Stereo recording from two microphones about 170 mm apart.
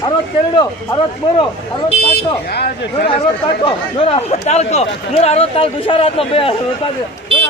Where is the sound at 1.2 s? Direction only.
25° left (ahead or behind).